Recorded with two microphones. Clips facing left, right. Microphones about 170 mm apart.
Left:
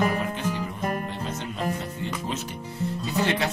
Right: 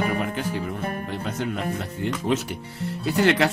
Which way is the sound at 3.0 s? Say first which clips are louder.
Right 7 dB; 90° right.